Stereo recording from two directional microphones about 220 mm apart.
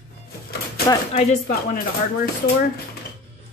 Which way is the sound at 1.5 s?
40° left (ahead or behind).